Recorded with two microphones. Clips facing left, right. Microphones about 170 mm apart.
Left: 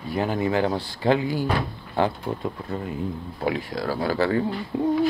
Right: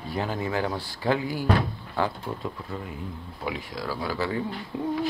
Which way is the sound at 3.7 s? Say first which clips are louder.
Left 6 dB; 60° left (ahead or behind).